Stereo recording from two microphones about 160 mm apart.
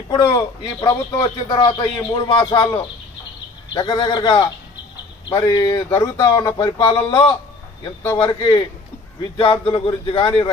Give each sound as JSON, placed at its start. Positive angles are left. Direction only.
{"t": 0.1, "sound": "speech", "side_deg": 25}